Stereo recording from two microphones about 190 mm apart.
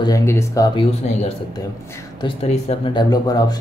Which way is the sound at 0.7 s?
30° left (ahead or behind).